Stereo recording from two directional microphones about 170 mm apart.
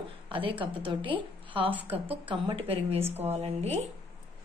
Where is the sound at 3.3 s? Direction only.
40° right (ahead or behind).